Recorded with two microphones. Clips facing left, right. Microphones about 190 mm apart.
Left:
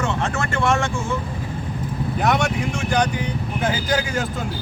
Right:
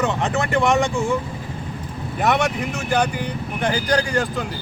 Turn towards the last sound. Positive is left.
turn(degrees=5)  # may be behind; listen again after turning